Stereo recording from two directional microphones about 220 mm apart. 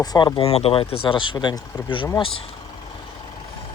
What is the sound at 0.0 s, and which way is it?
Speech, 20° left (ahead or behind).